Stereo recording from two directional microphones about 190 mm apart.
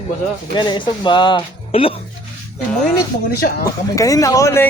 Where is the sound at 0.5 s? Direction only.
25° left (ahead or behind).